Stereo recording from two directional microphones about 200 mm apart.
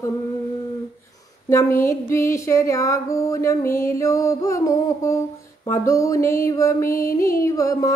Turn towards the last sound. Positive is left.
turn(degrees=15)  # may be behind; listen again after turning